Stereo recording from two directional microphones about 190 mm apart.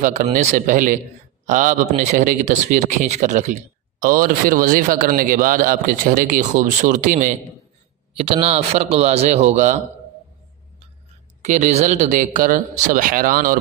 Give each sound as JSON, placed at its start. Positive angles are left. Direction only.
{"t": 0.0, "sound": "speech", "side_deg": -40}
{"t": 8.1, "sound": "speech", "side_deg": -30}
{"t": 11.4, "sound": "speech", "side_deg": -40}